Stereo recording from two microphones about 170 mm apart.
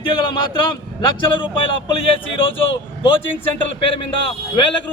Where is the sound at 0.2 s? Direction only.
25° left (ahead or behind).